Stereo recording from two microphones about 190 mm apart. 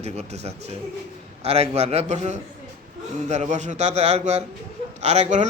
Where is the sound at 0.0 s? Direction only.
35° right (ahead or behind).